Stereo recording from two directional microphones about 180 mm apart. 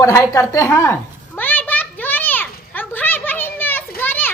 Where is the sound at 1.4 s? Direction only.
10° left (ahead or behind).